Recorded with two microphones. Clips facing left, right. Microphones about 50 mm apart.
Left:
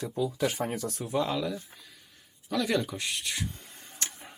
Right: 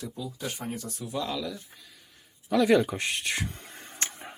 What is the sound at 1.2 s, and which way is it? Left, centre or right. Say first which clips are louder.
Speech: left 2 dB; left.